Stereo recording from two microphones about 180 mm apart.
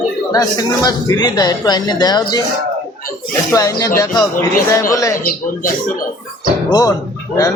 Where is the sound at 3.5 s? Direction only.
20° left (ahead or behind).